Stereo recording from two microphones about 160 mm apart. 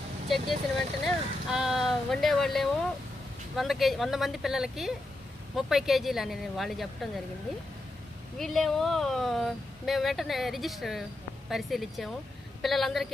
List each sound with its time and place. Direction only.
0.3 s speech: centre (ahead or behind)
8.4 s speech: centre (ahead or behind)